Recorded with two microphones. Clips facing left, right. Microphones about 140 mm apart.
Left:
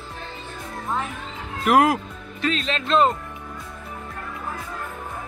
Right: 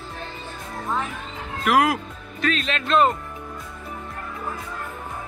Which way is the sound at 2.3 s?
25° left (ahead or behind).